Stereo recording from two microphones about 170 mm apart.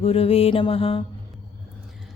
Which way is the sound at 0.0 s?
35° left (ahead or behind).